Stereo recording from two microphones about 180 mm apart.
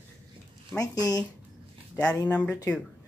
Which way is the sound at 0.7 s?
20° left (ahead or behind).